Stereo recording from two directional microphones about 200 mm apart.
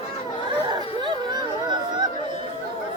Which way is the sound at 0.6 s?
20° right (ahead or behind).